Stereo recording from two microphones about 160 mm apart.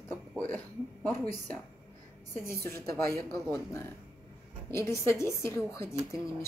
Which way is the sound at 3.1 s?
15° left (ahead or behind).